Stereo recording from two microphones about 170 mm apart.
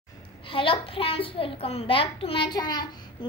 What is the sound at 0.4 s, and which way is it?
A child's voice, 30° left (ahead or behind).